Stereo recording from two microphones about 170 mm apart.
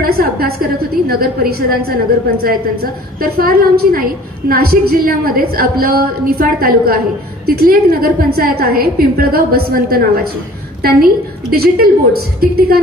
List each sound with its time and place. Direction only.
0.0 s a woman's voice: 60° right (ahead or behind)